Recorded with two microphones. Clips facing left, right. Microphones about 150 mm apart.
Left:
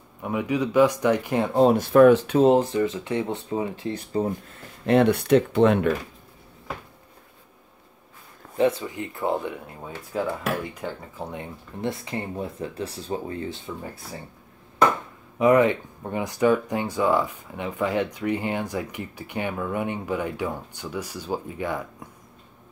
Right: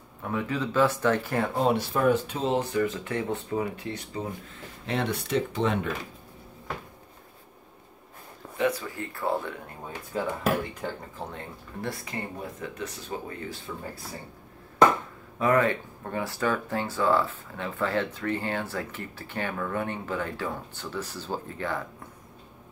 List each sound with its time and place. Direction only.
0.2 s speech: 15° left (ahead or behind)
1.6 s speech: 40° left (ahead or behind)
1.9 s speech: 75° left (ahead or behind)
2.3 s speech: 50° left (ahead or behind)
2.6 s speech: 25° left (ahead or behind)
3.9 s speech: 40° left (ahead or behind)
4.8 s speech: 60° left (ahead or behind)
8.5 s speech: 25° left (ahead or behind)
11.1 s speech: 15° left (ahead or behind)
12.5 s speech: 30° left (ahead or behind)
15.3 s speech: 20° left (ahead or behind)